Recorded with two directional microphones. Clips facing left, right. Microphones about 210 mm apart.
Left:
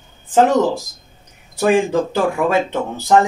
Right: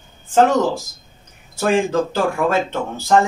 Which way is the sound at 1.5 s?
15° left (ahead or behind).